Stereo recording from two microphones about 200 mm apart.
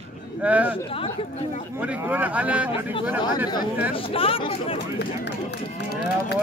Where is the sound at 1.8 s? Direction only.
10° right (ahead or behind).